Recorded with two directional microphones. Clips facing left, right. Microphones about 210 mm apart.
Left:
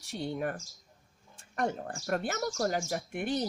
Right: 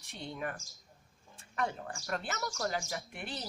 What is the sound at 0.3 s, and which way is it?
Speech, 40° left (ahead or behind).